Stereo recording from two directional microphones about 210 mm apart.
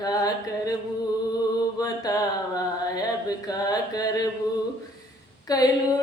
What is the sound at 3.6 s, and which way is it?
Mantra, 20° left (ahead or behind).